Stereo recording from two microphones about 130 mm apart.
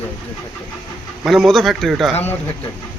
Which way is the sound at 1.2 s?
Centre (ahead or behind).